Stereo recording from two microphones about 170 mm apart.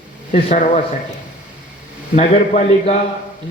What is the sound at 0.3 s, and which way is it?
Speech, 40° left (ahead or behind).